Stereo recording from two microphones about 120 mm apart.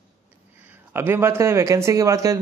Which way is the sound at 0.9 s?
20° right (ahead or behind).